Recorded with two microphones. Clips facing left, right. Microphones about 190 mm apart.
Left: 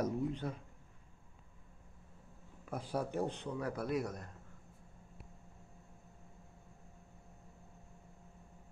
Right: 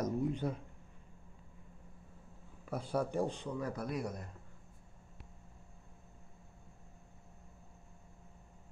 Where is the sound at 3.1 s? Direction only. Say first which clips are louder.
Right 2 dB; 60° left (ahead or behind).